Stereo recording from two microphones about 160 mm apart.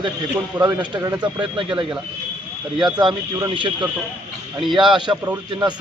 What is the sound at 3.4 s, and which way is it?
A man's voice, 30° right (ahead or behind).